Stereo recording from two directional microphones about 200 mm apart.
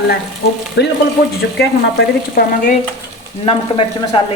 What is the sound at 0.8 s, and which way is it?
Frying, 60° left (ahead or behind).